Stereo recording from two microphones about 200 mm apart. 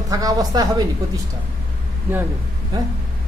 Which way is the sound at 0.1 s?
20° right (ahead or behind).